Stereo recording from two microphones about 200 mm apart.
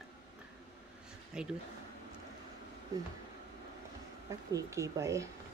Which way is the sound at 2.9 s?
20° right (ahead or behind).